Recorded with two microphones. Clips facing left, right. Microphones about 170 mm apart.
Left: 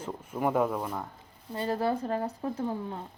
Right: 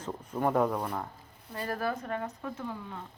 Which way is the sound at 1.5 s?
25° left (ahead or behind).